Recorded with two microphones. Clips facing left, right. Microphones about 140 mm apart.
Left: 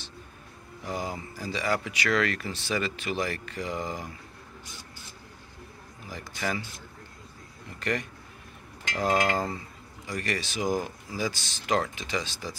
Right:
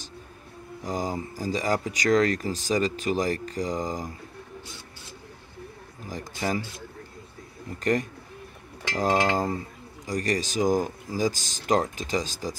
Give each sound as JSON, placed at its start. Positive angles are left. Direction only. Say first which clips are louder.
{"t": 0.8, "sound": "speech", "louder": "right 4 dB", "side_deg": -40}
{"t": 6.4, "sound": "speech", "louder": "right 3 dB", "side_deg": -30}
{"t": 7.8, "sound": "speech", "louder": "right 6 dB", "side_deg": -40}
{"t": 9.1, "sound": "a sound", "louder": "right 2 dB", "side_deg": -20}
{"t": 10.0, "sound": "speech", "louder": "right 5 dB", "side_deg": -40}